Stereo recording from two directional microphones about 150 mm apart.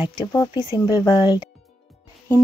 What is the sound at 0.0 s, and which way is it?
Speech, 25° left (ahead or behind).